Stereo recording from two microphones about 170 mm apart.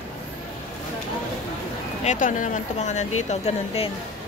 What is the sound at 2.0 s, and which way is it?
Speech, 50° left (ahead or behind).